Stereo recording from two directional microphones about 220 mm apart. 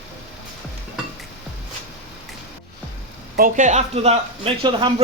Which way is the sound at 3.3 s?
35° right (ahead or behind).